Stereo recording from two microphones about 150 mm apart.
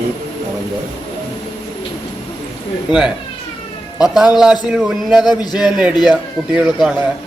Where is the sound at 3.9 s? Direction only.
5° right (ahead or behind).